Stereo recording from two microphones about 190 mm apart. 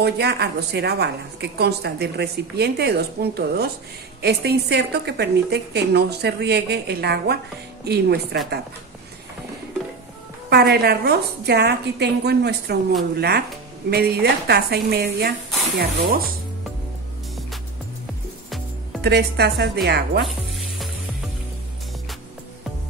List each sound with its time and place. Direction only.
0.0 s a woman's voice: 60° right (ahead or behind)
10.5 s a woman's voice: 55° right (ahead or behind)
18.9 s a woman's voice: 60° right (ahead or behind)